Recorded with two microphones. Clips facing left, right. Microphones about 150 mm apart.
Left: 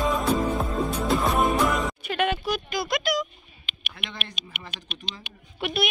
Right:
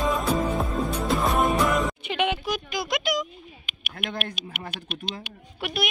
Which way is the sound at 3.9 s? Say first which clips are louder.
Right 7 dB; 50° right (ahead or behind).